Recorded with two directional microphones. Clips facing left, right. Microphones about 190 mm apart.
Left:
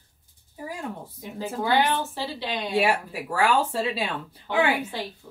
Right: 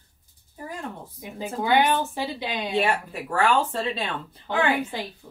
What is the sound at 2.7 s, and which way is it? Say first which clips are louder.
Speech: left 1 dB; 10° left (ahead or behind).